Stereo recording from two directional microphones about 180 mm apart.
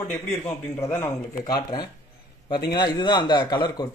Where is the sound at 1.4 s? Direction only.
25° left (ahead or behind).